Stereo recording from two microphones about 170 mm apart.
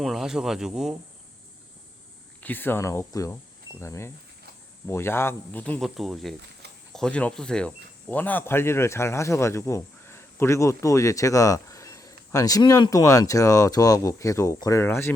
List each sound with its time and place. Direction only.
0.0 s speech: centre (ahead or behind)
2.4 s speech: 10° left (ahead or behind)